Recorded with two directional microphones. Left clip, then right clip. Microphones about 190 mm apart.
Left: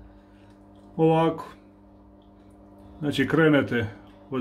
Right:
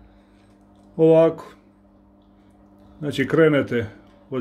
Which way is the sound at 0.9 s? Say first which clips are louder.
Right 6 dB; 15° right (ahead or behind).